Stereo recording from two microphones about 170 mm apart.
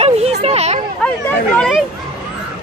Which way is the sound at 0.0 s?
40° right (ahead or behind).